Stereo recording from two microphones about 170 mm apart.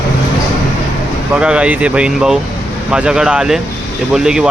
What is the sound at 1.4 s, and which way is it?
Speech, 5° right (ahead or behind).